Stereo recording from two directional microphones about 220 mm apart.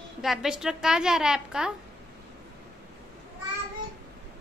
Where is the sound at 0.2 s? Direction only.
Centre (ahead or behind).